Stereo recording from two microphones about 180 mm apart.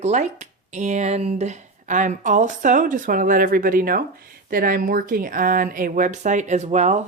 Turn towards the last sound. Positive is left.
turn(degrees=-40)  # may be behind; listen again after turning